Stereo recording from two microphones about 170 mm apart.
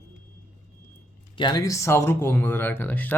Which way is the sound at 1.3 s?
25° left (ahead or behind).